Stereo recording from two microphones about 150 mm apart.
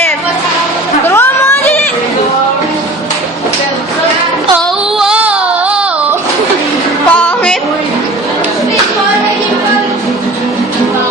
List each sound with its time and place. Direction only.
1.0 s chatter: 15° left (ahead or behind)
4.5 s child singing: 5° right (ahead or behind)
7.1 s music: 10° left (ahead or behind)